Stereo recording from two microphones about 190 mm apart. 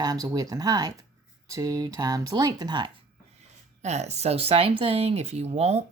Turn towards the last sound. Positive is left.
turn(degrees=-35)  # may be behind; listen again after turning